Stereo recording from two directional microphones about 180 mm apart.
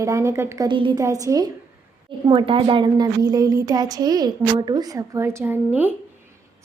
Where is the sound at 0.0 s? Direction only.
15° right (ahead or behind).